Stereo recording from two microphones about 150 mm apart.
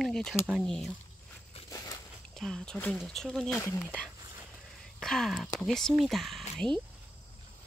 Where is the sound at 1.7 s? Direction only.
20° left (ahead or behind).